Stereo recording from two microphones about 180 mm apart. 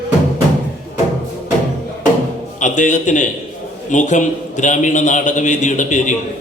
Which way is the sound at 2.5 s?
45° left (ahead or behind).